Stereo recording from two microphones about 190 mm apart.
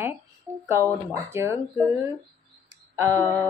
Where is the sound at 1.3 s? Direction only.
15° right (ahead or behind).